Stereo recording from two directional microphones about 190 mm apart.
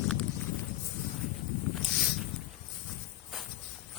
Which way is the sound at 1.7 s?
5° right (ahead or behind).